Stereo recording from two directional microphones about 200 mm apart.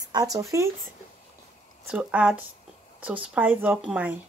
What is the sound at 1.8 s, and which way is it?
Speech, 5° right (ahead or behind).